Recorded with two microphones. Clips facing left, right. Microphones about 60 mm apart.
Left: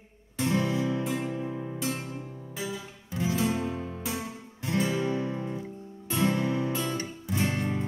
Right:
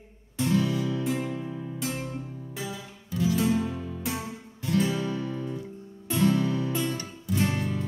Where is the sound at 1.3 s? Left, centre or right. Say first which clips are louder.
Left 1 dB; left.